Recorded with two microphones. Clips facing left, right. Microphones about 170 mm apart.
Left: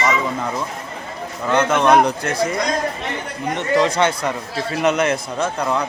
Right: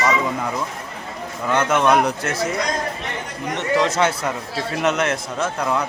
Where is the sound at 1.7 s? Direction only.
5° right (ahead or behind).